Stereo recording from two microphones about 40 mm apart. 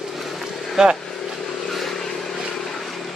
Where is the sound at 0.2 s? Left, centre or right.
Centre.